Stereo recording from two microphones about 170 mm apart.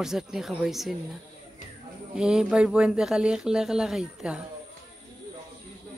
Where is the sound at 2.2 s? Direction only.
5° right (ahead or behind).